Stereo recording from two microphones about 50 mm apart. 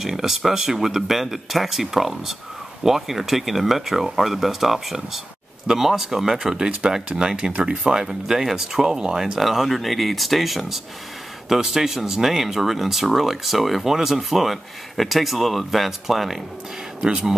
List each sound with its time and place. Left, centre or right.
0.0 s speech: centre
7.5 s speech: right
7.8 s speech: centre
17.0 s speech: centre